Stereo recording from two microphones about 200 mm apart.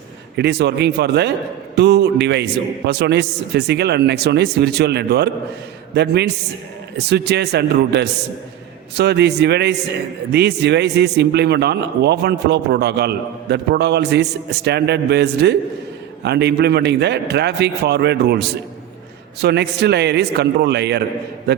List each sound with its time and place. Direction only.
0.3 s a man's voice: 55° right (ahead or behind)
19.4 s a man's voice: 55° right (ahead or behind)